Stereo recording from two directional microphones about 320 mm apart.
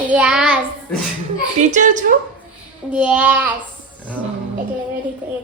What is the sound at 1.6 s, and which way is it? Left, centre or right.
Speech, right.